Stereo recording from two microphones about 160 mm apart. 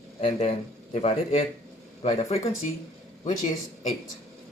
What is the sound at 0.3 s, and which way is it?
Speech, 50° left (ahead or behind).